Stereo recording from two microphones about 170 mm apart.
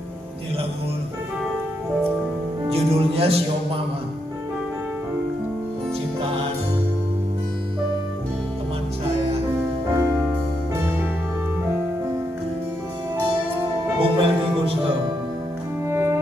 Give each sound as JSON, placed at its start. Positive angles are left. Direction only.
{"t": 2.7, "sound": "speech", "side_deg": -35}
{"t": 14.0, "sound": "music", "side_deg": -30}
{"t": 15.9, "sound": "music", "side_deg": -15}